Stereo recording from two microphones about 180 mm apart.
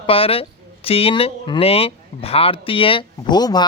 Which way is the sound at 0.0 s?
30° left (ahead or behind).